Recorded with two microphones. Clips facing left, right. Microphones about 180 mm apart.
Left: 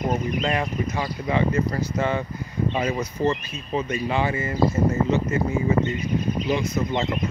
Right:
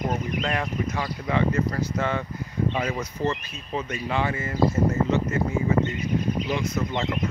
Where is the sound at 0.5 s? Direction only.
10° left (ahead or behind).